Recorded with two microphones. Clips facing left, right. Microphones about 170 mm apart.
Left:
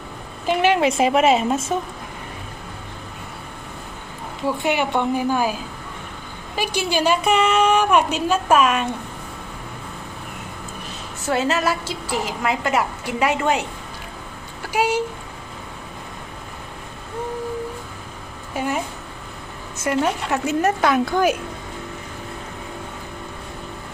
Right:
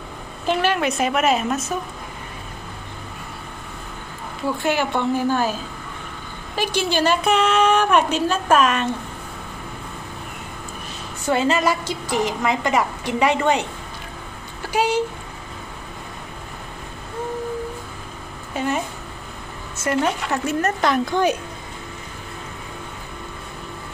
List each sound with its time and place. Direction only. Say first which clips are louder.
0.5 s a woman's voice: left 3 dB; 20° left (ahead or behind)
4.6 s a woman's voice: even; 15° left (ahead or behind)
11.2 s a woman's voice: right 2 dB; 5° left (ahead or behind)
14.7 s a woman's voice: even; 10° left (ahead or behind)
18.5 s speech: right 1 dB; 10° left (ahead or behind)
19.8 s a woman's voice: even; 10° left (ahead or behind)